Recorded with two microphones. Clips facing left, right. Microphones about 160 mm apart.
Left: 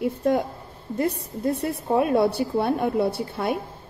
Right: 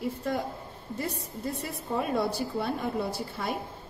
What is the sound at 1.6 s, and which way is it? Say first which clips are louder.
A woman's voice: left 9 dB; 65° left (ahead or behind).